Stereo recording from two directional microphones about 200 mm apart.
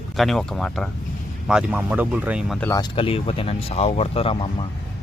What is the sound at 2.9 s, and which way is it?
Speech, 25° left (ahead or behind).